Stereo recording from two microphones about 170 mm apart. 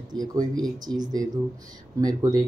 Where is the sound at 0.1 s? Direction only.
20° right (ahead or behind).